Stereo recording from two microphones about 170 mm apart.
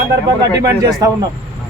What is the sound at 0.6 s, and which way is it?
Speech, 20° right (ahead or behind).